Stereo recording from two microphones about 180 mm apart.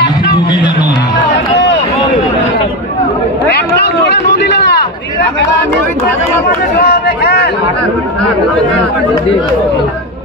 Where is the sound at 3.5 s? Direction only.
65° left (ahead or behind).